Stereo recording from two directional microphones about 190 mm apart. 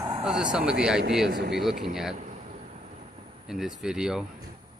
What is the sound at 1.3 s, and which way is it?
Speech, 60° right (ahead or behind).